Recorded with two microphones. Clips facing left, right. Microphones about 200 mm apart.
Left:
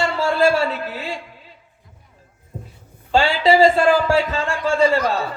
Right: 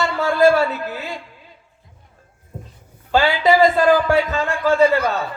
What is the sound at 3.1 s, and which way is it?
Speech, 30° left (ahead or behind).